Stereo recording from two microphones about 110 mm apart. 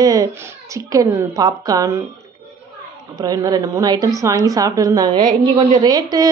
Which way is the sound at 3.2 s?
30° right (ahead or behind).